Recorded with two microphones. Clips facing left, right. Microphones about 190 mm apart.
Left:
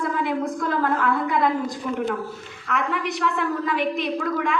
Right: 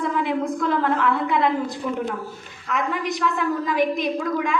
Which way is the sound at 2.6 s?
60° left (ahead or behind).